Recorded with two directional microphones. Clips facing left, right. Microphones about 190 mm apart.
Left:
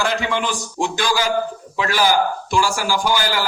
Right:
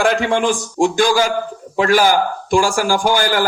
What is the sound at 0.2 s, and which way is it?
A man's voice, 50° right (ahead or behind).